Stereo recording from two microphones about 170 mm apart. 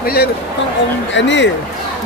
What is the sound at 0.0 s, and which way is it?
Speech, 65° left (ahead or behind).